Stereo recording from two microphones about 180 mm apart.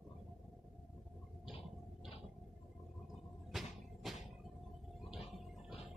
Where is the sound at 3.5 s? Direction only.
Centre (ahead or behind).